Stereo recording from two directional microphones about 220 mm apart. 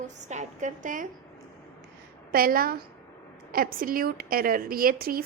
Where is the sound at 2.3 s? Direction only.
40° right (ahead or behind).